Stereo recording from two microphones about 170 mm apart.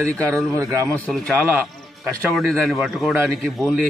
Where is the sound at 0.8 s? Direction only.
5° left (ahead or behind).